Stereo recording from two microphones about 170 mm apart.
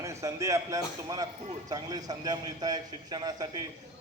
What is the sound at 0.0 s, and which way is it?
A man's voice, 20° right (ahead or behind).